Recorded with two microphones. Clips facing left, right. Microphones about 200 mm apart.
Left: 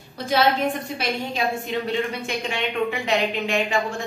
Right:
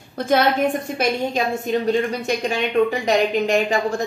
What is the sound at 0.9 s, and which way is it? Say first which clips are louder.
A woman's voice: right 5 dB; 45° right (ahead or behind).